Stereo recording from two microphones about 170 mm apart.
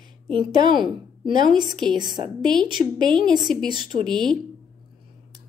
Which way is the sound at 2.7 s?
25° right (ahead or behind).